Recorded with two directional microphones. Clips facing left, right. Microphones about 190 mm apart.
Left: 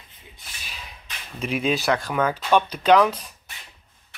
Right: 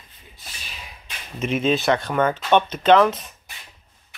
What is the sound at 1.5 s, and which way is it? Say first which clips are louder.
Speech: right 3 dB; 10° left (ahead or behind).